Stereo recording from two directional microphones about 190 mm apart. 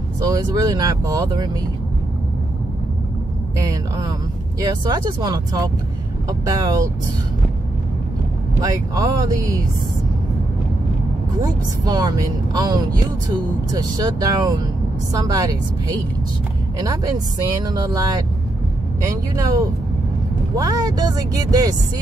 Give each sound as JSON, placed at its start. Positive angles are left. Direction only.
{"t": 0.2, "sound": "a woman's voice", "side_deg": -20}
{"t": 3.5, "sound": "a woman's voice", "side_deg": -20}
{"t": 8.5, "sound": "a woman's voice", "side_deg": -20}
{"t": 11.4, "sound": "a woman's voice", "side_deg": -20}
{"t": 16.7, "sound": "a woman's voice", "side_deg": -20}